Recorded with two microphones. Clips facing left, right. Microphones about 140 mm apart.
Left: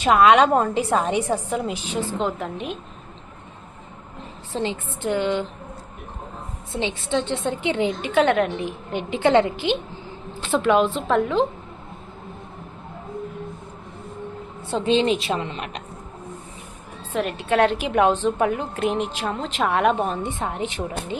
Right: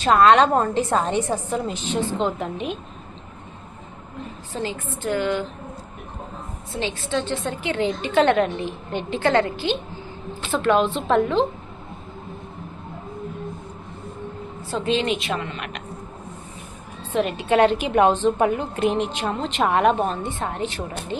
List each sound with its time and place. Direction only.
0.0 s a woman's voice: 10° left (ahead or behind)
4.5 s speech: 25° left (ahead or behind)
6.7 s a woman's voice: 20° left (ahead or behind); by 11.4 s 5° left (ahead or behind)
14.8 s speech: 30° left (ahead or behind)
17.2 s a woman's voice: centre (ahead or behind); by 21.2 s 15° left (ahead or behind)